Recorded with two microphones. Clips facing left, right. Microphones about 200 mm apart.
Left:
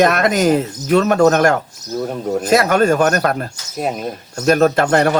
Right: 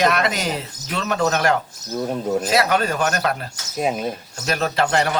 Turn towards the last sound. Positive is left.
turn(degrees=50)  # may be behind; listen again after turning